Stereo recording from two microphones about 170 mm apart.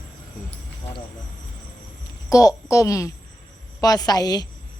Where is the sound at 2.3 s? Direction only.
20° left (ahead or behind).